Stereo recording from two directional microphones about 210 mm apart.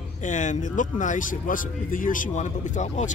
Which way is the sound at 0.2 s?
35° left (ahead or behind).